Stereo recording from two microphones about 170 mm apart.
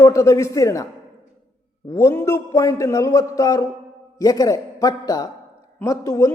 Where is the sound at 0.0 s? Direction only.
15° left (ahead or behind).